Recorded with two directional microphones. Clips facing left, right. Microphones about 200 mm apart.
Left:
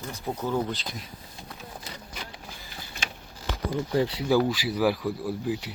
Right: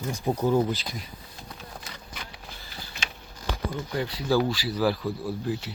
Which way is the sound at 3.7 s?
30° left (ahead or behind).